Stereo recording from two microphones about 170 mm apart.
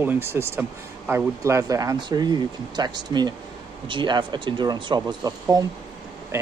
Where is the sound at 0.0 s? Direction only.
15° right (ahead or behind).